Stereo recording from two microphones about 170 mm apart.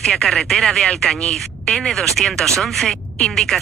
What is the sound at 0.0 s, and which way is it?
Speech, 5° left (ahead or behind).